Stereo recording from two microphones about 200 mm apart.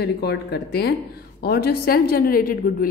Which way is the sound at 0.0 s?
55° left (ahead or behind).